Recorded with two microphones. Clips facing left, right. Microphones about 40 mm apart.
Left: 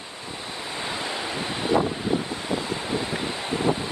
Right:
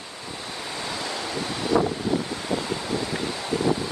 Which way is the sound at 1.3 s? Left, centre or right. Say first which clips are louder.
Even; left.